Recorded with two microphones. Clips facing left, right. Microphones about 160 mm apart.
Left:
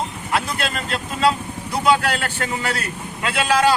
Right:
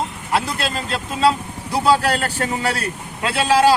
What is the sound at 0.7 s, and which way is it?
A man's voice, 30° right (ahead or behind).